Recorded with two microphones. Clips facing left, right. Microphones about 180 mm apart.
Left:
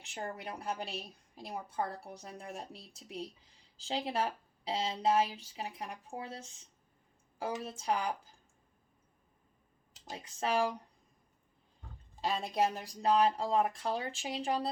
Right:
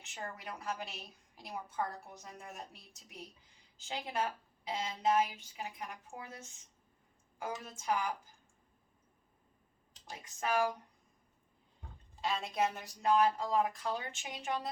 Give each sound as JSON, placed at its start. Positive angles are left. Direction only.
{"t": 0.0, "sound": "a woman's voice", "side_deg": 30}
{"t": 10.1, "sound": "speech", "side_deg": 30}
{"t": 12.2, "sound": "a woman's voice", "side_deg": 35}